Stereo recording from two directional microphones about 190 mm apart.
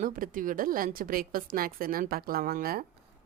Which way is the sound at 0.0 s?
45° right (ahead or behind).